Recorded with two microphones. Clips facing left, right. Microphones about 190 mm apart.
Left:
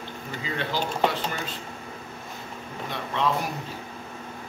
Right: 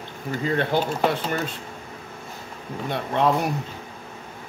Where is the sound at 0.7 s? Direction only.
55° right (ahead or behind).